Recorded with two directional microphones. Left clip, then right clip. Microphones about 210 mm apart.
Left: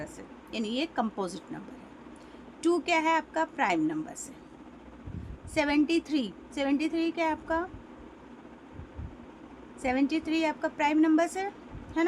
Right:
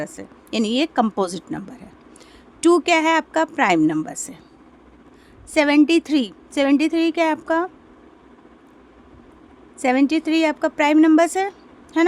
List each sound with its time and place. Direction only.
0.0 s a woman's voice: 55° right (ahead or behind)
5.5 s a woman's voice: 55° right (ahead or behind)
9.8 s a woman's voice: 55° right (ahead or behind)